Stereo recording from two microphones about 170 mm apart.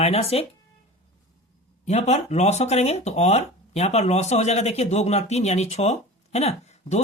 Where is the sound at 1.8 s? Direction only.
40° left (ahead or behind).